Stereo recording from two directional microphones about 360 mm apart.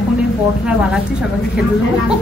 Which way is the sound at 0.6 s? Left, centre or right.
Centre.